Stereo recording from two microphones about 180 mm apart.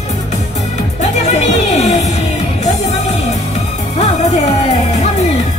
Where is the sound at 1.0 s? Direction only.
40° left (ahead or behind).